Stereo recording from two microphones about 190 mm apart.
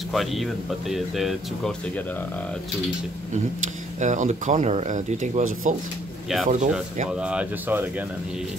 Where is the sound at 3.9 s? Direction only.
40° right (ahead or behind).